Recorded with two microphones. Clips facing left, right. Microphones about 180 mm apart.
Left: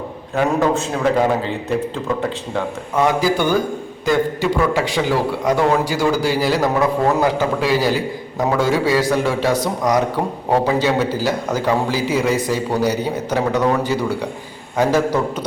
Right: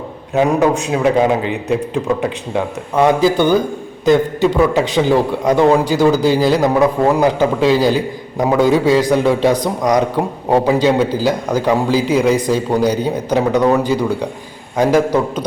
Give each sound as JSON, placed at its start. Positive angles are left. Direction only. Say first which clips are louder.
{"t": 0.3, "sound": "a man's voice", "louder": "right 4 dB", "side_deg": -15}